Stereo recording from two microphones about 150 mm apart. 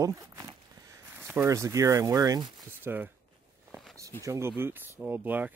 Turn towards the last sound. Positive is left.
turn(degrees=-10)  # may be behind; listen again after turning